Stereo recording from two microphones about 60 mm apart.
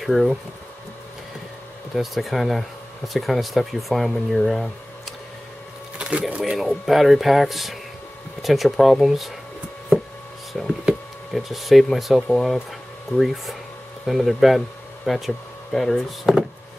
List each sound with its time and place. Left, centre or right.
0.0 s speech: centre
2.0 s speech: centre
5.9 s a sound: centre
6.4 s speech: centre
11.3 s speech: centre